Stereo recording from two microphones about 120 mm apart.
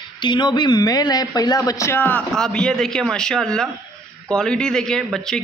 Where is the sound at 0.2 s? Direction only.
40° left (ahead or behind).